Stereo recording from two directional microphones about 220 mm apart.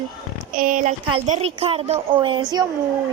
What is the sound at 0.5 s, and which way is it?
A woman's voice, 35° right (ahead or behind).